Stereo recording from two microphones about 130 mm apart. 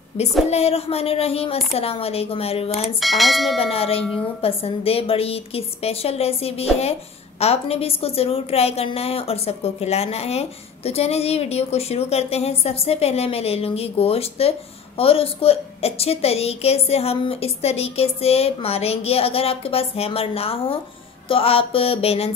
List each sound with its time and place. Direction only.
0.5 s a woman's voice: 50° left (ahead or behind)
3.0 s speech: centre (ahead or behind)
3.5 s a woman's voice: 50° left (ahead or behind)